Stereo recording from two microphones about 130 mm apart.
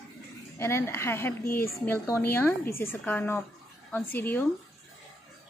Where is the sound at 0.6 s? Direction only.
20° left (ahead or behind).